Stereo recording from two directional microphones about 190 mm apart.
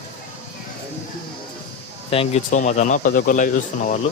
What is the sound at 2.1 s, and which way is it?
Speech, 30° left (ahead or behind).